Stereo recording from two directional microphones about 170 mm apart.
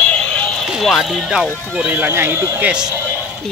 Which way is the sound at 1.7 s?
10° right (ahead or behind).